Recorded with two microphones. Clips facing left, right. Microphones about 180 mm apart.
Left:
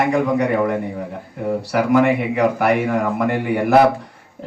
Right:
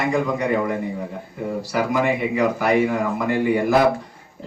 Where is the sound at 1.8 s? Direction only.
60° left (ahead or behind).